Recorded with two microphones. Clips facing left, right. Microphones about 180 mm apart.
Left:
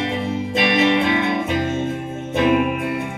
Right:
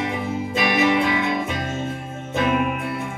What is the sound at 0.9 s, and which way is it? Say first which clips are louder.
Music: left 2 dB; 65° left (ahead or behind).